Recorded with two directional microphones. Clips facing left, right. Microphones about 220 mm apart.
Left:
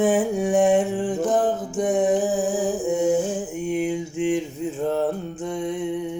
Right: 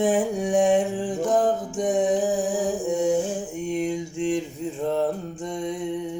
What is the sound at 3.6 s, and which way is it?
Mantra, 5° left (ahead or behind).